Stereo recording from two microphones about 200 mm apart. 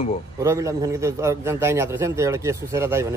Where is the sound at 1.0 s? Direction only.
15° right (ahead or behind).